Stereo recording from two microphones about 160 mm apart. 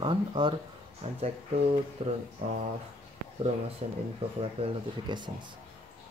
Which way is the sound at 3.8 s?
45° right (ahead or behind).